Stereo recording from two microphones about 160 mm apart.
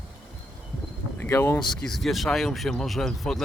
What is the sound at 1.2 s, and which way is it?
Speech, 15° left (ahead or behind).